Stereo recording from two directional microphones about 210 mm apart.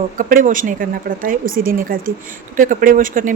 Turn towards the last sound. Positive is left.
turn(degrees=-40)  # may be behind; listen again after turning